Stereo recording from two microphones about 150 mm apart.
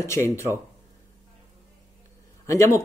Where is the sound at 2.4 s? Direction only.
20° left (ahead or behind).